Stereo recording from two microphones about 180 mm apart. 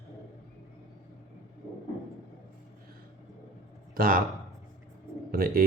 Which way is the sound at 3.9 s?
50° right (ahead or behind).